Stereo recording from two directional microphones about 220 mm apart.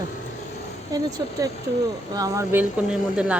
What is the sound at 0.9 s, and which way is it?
Speech, 15° right (ahead or behind).